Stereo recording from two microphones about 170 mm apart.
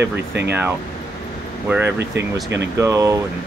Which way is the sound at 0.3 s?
80° right.